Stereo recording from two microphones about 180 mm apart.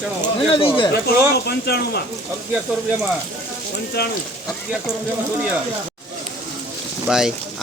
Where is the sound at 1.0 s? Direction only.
65° left (ahead or behind).